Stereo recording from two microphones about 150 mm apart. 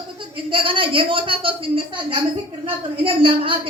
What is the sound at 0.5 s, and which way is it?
A woman's voice, 35° right (ahead or behind).